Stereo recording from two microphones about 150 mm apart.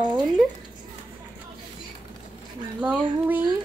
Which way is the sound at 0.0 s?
30° right (ahead or behind).